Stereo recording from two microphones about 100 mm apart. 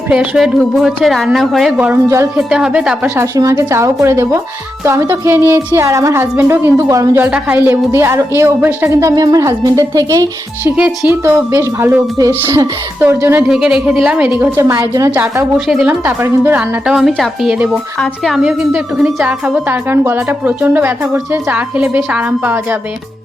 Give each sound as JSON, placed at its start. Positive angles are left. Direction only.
{"t": 0.1, "sound": "a woman's voice", "side_deg": -10}
{"t": 3.2, "sound": "a woman's voice", "side_deg": -30}
{"t": 7.2, "sound": "a woman's voice", "side_deg": -20}
{"t": 11.1, "sound": "a woman's voice", "side_deg": -25}
{"t": 12.2, "sound": "a woman's voice", "side_deg": -35}
{"t": 13.0, "sound": "a woman's voice", "side_deg": -20}
{"t": 13.5, "sound": "a woman's voice", "side_deg": -5}
{"t": 14.5, "sound": "a woman's voice", "side_deg": -30}
{"t": 15.1, "sound": "a woman's voice", "side_deg": -20}
{"t": 15.5, "sound": "a woman's voice", "side_deg": -5}
{"t": 16.0, "sound": "a woman's voice", "side_deg": -20}
{"t": 16.8, "sound": "a woman's voice", "side_deg": -5}
{"t": 18.4, "sound": "a woman's voice", "side_deg": -10}